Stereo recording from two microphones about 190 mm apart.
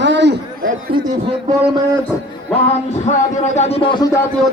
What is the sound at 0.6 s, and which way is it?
Speech, 45° right (ahead or behind).